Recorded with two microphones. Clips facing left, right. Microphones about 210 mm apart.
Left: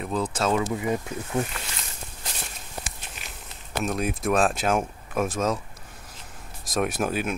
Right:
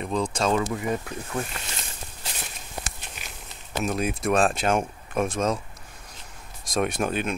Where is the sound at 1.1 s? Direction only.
20° left (ahead or behind).